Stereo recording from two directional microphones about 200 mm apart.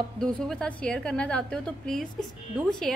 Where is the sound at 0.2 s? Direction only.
Centre (ahead or behind).